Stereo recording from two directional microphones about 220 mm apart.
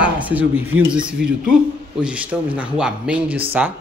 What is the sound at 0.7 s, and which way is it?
Speech, 65° right (ahead or behind).